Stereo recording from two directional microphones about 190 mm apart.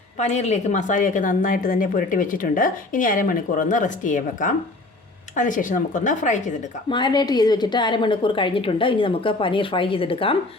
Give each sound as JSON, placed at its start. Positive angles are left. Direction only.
{"t": 0.2, "sound": "a woman's voice", "side_deg": 35}
{"t": 6.9, "sound": "a woman's voice", "side_deg": 25}